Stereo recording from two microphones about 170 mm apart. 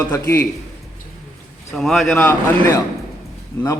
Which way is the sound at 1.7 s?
Centre (ahead or behind).